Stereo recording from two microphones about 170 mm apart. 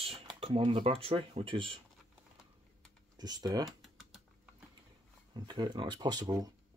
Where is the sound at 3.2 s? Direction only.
25° right (ahead or behind).